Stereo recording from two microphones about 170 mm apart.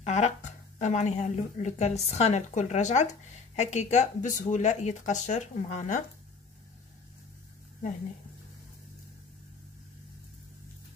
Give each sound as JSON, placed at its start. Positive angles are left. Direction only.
{"t": 0.0, "sound": "speech", "side_deg": 45}